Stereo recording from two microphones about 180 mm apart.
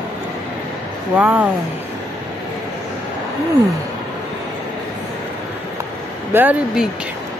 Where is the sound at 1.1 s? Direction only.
5° right (ahead or behind).